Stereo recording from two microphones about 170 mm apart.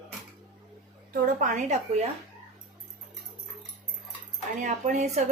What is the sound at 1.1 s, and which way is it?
Speech, 50° right (ahead or behind).